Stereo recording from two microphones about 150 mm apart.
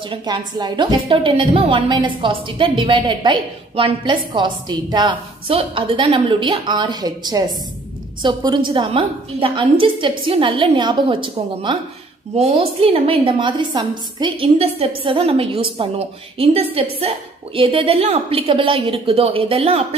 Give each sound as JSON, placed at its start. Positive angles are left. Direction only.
{"t": 0.1, "sound": "a woman's voice", "side_deg": -30}